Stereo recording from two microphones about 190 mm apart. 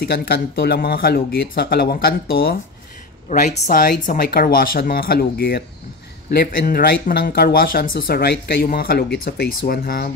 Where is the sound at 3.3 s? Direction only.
40° left (ahead or behind).